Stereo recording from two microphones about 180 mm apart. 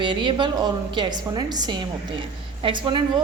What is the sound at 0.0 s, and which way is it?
A woman's voice, 25° right (ahead or behind).